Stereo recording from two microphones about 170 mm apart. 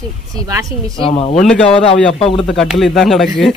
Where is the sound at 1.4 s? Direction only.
5° left (ahead or behind).